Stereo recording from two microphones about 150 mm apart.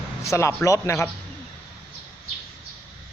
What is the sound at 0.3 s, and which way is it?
Speech, 20° left (ahead or behind).